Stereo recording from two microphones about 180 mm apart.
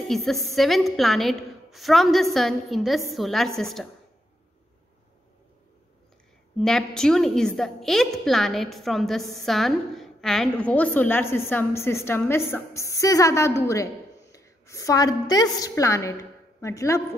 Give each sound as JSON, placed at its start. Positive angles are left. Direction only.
{"t": 0.1, "sound": "a woman's voice", "side_deg": 0}
{"t": 6.6, "sound": "a woman's voice", "side_deg": 5}
{"t": 14.3, "sound": "a sound", "side_deg": 15}
{"t": 15.6, "sound": "a woman's voice", "side_deg": 15}